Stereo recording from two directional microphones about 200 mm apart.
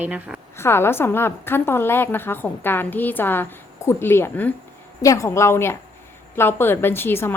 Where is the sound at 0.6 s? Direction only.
10° left (ahead or behind).